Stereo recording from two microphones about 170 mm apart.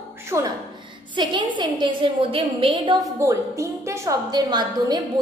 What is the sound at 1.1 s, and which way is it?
A woman's voice, 30° right (ahead or behind).